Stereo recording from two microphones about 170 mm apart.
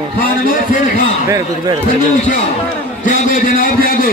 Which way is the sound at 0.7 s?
50° left (ahead or behind).